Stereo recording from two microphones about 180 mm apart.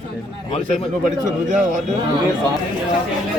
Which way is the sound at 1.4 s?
45° right (ahead or behind).